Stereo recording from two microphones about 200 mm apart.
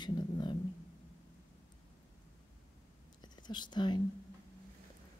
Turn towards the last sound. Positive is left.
turn(degrees=20)  # may be behind; listen again after turning